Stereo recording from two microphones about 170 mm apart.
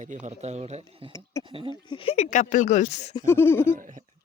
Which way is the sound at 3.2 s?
15° left (ahead or behind).